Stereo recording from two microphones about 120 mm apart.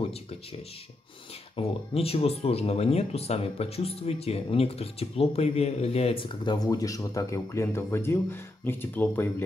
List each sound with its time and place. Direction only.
1.6 s speech: 55° left (ahead or behind); by 9.3 s 15° left (ahead or behind)